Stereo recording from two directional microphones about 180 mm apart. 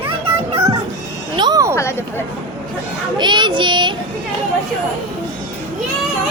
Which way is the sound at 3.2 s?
25° right (ahead or behind).